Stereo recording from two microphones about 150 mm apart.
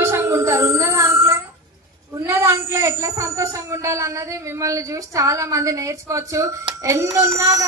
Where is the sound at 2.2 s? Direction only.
15° right (ahead or behind).